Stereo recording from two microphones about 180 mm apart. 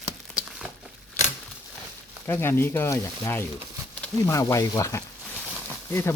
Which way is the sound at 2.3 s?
15° left (ahead or behind).